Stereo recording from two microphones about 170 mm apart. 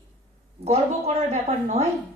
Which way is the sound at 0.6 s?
40° right (ahead or behind).